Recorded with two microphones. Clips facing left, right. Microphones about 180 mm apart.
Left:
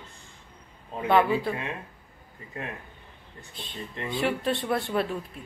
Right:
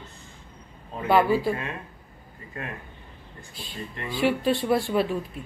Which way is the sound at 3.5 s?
5° right (ahead or behind).